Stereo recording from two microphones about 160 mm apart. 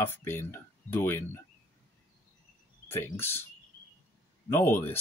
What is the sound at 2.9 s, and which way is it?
Speech, 15° left (ahead or behind).